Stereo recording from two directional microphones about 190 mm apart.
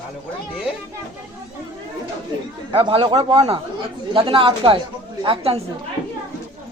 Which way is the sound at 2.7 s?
30° right (ahead or behind).